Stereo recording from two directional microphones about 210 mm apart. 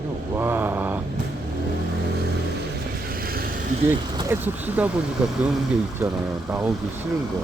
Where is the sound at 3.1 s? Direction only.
45° right (ahead or behind).